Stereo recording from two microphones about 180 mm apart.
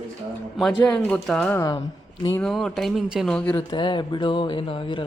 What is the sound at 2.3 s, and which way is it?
Speech, centre (ahead or behind).